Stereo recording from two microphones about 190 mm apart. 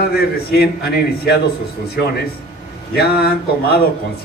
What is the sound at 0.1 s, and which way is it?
A man's voice, 55° left (ahead or behind).